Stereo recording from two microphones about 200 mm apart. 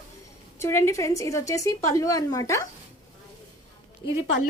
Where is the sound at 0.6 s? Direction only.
15° left (ahead or behind).